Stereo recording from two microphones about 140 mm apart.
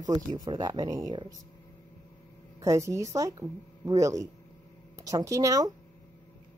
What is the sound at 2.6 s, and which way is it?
A woman's voice, 20° right (ahead or behind).